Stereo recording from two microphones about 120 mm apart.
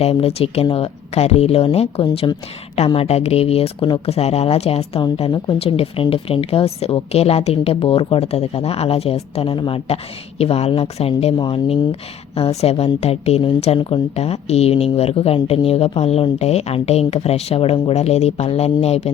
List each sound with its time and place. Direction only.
0.0 s a woman's voice: 55° left (ahead or behind)
4.0 s a woman's voice: 60° left (ahead or behind)
11.3 s speech: 40° left (ahead or behind)
12.4 s a woman's voice: 55° left (ahead or behind)